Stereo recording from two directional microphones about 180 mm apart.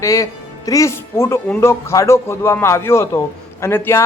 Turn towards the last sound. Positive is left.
turn(degrees=15)  # may be behind; listen again after turning